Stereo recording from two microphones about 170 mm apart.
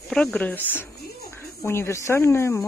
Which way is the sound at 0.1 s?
5° left (ahead or behind).